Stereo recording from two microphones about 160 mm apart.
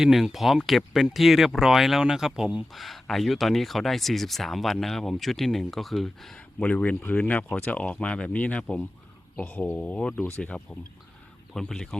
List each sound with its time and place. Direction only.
0.0 s speech: centre (ahead or behind)